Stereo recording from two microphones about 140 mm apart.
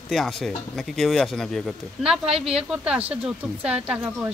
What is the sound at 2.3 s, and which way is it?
Speech, 45° right (ahead or behind).